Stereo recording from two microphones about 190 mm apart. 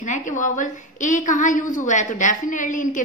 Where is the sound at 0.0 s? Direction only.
40° left (ahead or behind).